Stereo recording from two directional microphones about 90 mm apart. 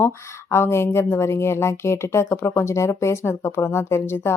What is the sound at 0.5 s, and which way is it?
Speech, 30° left (ahead or behind).